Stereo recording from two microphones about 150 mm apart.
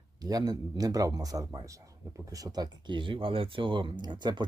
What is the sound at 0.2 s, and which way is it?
Speech, 25° right (ahead or behind).